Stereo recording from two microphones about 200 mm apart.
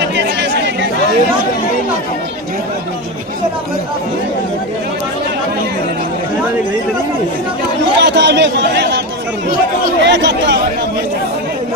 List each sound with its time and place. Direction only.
0.0 s chatter: 60° right (ahead or behind)
7.9 s a man's voice: 60° right (ahead or behind)
10.0 s speech: 60° right (ahead or behind)